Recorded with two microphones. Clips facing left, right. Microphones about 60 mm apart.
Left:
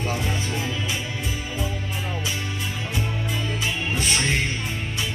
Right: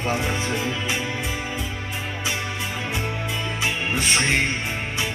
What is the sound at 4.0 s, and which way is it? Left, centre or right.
Music, right.